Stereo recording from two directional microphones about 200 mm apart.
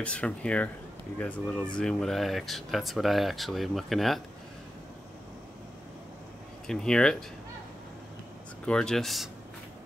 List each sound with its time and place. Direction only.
0.0 s speech: 5° left (ahead or behind)
6.7 s speech: 5° left (ahead or behind)
8.6 s speech: 5° left (ahead or behind)